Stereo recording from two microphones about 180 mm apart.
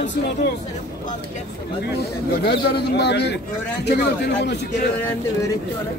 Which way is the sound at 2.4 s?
60° left (ahead or behind).